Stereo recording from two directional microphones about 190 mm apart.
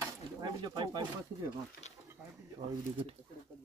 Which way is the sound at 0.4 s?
20° right (ahead or behind).